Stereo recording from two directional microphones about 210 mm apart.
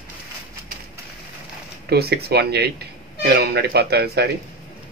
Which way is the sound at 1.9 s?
50° right (ahead or behind).